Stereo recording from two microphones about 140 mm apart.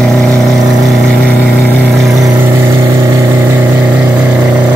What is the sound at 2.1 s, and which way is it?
Vehicle, 20° right (ahead or behind).